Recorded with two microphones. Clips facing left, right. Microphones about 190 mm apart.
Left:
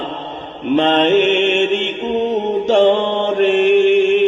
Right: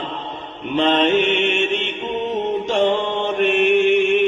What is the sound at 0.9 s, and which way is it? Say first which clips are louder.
Mantra: left 3 dB; 60° left (ahead or behind).